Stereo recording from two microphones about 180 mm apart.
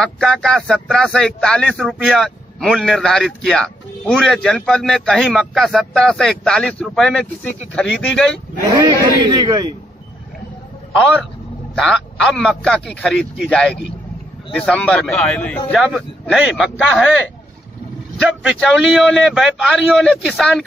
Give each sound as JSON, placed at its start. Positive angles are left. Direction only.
{"t": 0.0, "sound": "speech", "side_deg": 5}
{"t": 8.8, "sound": "a man's voice", "side_deg": -20}
{"t": 11.7, "sound": "speech", "side_deg": 0}
{"t": 15.7, "sound": "speech", "side_deg": -5}
{"t": 18.4, "sound": "speech", "side_deg": 0}